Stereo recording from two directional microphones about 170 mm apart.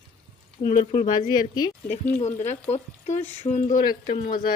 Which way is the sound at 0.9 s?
25° left (ahead or behind).